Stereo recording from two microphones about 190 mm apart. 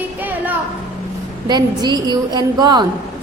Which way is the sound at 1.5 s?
20° right (ahead or behind).